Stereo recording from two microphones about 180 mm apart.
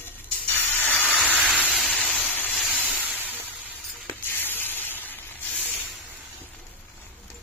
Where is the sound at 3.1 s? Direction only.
10° right (ahead or behind).